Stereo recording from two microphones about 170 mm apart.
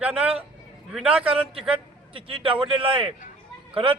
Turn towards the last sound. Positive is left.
turn(degrees=-30)  # may be behind; listen again after turning